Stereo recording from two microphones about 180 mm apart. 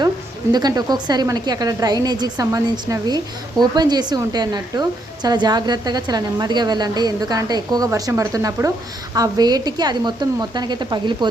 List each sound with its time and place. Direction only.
0.5 s a woman's voice: 20° right (ahead or behind)